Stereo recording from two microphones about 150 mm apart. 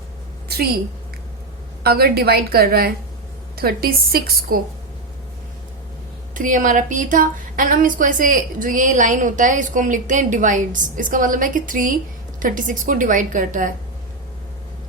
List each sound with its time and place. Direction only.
0.4 s a sound: 90° right
1.8 s a woman's voice: 90° right
6.3 s a woman's voice: 60° right (ahead or behind)